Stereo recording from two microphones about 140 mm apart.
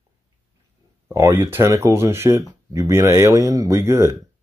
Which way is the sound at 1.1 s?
20° right (ahead or behind).